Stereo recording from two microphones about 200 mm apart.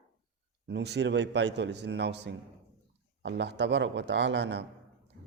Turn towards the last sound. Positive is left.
turn(degrees=-60)  # may be behind; listen again after turning